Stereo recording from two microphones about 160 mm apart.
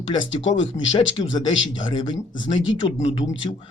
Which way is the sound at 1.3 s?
25° left (ahead or behind).